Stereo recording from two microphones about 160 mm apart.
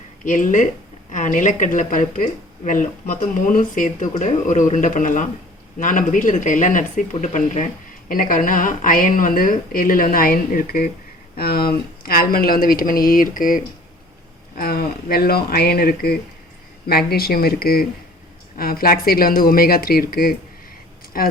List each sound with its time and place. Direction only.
0.3 s speech: 55° left (ahead or behind)
11.3 s speech: 70° left (ahead or behind)